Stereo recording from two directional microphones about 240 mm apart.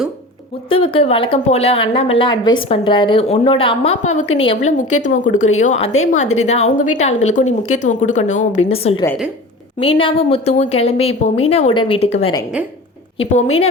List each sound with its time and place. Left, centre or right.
0.7 s speech: left